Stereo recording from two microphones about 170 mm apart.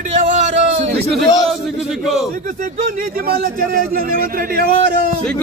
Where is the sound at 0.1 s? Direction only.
45° right (ahead or behind).